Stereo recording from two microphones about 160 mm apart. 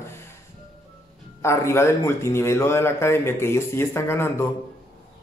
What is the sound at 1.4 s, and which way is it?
Speech, 15° left (ahead or behind).